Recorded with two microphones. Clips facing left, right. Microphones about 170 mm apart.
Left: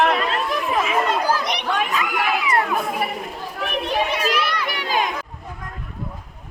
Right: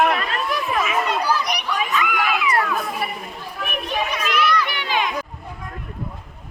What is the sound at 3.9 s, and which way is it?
Children playing, 30° left (ahead or behind).